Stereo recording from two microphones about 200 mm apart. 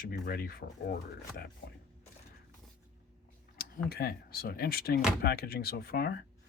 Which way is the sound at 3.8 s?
50° left (ahead or behind).